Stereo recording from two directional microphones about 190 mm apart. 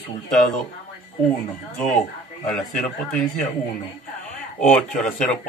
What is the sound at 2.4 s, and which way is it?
Speech, 5° left (ahead or behind).